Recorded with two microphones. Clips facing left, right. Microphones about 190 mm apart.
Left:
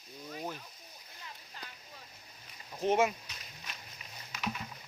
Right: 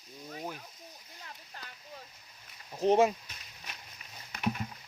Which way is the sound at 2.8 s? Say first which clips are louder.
Right 4 dB; 35° right (ahead or behind).